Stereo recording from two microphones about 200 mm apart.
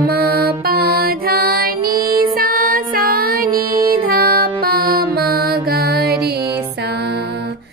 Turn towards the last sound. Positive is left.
turn(degrees=-55)  # may be behind; listen again after turning